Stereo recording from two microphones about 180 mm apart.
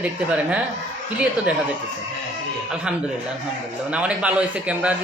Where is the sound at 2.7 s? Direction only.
5° right (ahead or behind).